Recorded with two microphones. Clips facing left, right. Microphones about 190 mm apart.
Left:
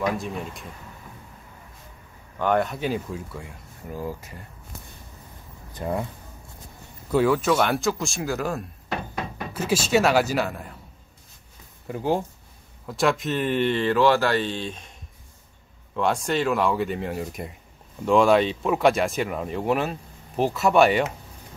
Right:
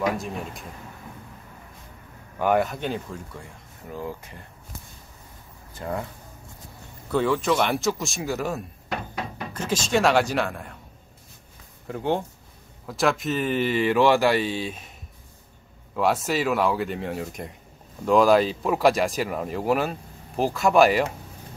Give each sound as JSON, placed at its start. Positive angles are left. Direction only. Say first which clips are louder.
{"t": 0.0, "sound": "speech", "louder": "even", "side_deg": 0}
{"t": 2.3, "sound": "speech", "louder": "right 1 dB", "side_deg": -10}
{"t": 5.8, "sound": "speech", "louder": "left 3 dB", "side_deg": 20}
{"t": 7.1, "sound": "speech", "louder": "left 2 dB", "side_deg": 5}
{"t": 11.9, "sound": "speech", "louder": "left 1 dB", "side_deg": 5}
{"t": 16.0, "sound": "speech", "louder": "even", "side_deg": -5}